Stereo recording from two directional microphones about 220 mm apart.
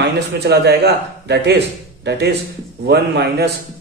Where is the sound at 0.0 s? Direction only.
50° right (ahead or behind).